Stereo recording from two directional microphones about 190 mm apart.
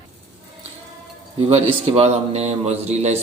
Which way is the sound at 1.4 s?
35° right (ahead or behind).